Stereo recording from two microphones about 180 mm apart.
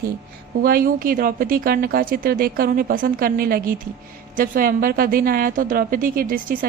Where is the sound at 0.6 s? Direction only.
50° right (ahead or behind).